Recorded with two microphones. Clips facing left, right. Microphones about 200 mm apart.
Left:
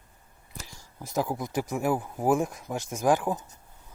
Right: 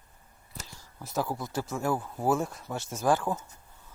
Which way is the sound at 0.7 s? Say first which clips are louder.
Left 3 dB; 15° left (ahead or behind).